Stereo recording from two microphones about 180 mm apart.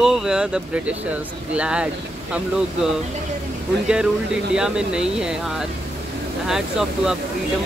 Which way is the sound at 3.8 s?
5° right (ahead or behind).